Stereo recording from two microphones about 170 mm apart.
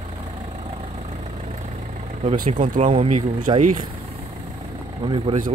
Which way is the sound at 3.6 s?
50° right (ahead or behind).